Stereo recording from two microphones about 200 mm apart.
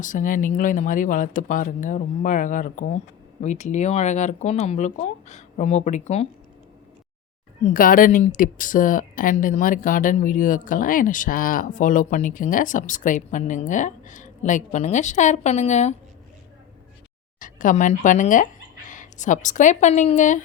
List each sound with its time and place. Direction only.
0.0 s a woman's voice: 40° left (ahead or behind)
7.6 s a woman's voice: 45° left (ahead or behind)
17.4 s a woman's voice: 40° left (ahead or behind)